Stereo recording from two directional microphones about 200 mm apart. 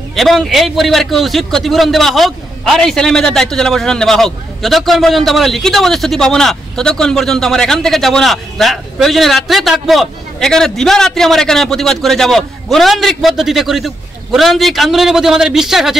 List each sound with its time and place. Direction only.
0.1 s a man's voice: centre (ahead or behind)